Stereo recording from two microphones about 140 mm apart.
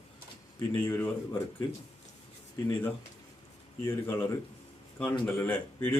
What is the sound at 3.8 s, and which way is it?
A man's voice, 20° left (ahead or behind).